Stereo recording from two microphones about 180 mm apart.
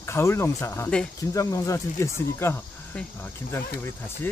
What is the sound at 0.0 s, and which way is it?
Speech, 15° left (ahead or behind).